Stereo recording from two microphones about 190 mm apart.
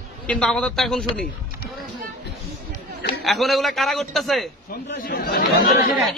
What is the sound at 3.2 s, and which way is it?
A man's voice, centre (ahead or behind).